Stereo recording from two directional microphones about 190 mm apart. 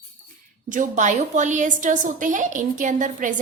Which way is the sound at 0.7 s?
45° right (ahead or behind).